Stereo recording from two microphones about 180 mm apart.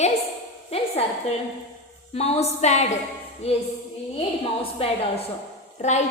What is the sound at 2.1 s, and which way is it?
A woman's voice, 35° left (ahead or behind).